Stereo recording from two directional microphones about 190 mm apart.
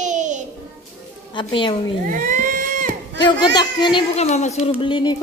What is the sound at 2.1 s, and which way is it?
Crowd, 45° right (ahead or behind).